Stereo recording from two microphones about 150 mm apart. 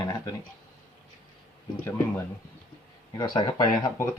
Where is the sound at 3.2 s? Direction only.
30° left (ahead or behind).